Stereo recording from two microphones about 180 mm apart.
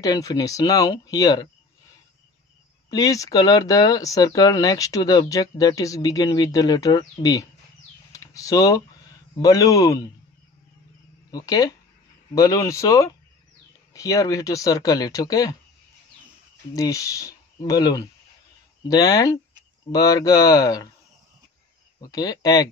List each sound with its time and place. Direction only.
0.0 s speech: 20° left (ahead or behind)
2.9 s speech: 20° left (ahead or behind)
11.3 s speech: 20° left (ahead or behind)
16.7 s speech: 20° left (ahead or behind)
22.0 s speech: 20° left (ahead or behind)